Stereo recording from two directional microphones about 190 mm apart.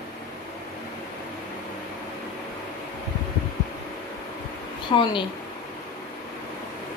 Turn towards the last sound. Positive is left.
turn(degrees=25)  # may be behind; listen again after turning